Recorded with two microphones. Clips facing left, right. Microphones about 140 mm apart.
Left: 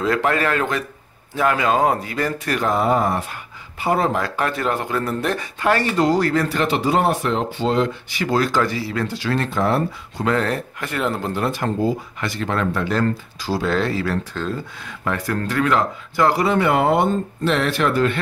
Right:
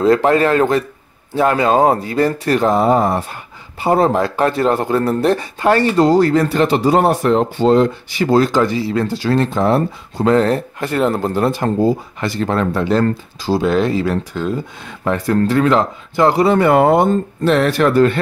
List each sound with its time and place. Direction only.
0.0 s speech: 30° right (ahead or behind); by 14.6 s 15° right (ahead or behind)
14.9 s speech: 25° right (ahead or behind)
16.5 s speech: 45° right (ahead or behind)